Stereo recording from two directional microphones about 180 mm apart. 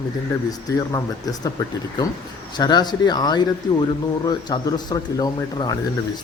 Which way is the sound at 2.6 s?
25° left (ahead or behind).